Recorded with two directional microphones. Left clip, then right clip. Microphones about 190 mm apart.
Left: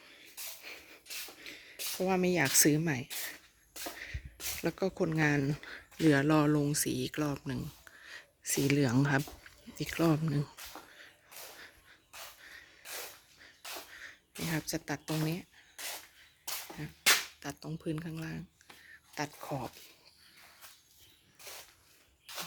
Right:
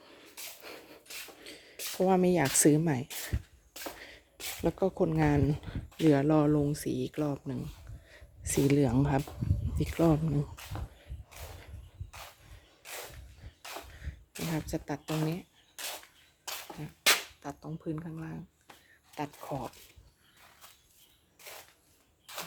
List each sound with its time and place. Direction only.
0.0 s a sound: 35° right (ahead or behind)
1.4 s a sound: 20° right (ahead or behind)
2.6 s speech: 20° right (ahead or behind)
4.6 s speech: 10° right (ahead or behind)
8.4 s speech: 15° right (ahead or behind)
9.7 s speech: 15° right (ahead or behind)
13.6 s a sound: 5° right (ahead or behind)
16.8 s cap gun: centre (ahead or behind)
19.1 s speech: centre (ahead or behind)